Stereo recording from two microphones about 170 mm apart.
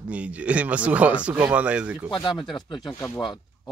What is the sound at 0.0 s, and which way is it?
Speech, 10° right (ahead or behind).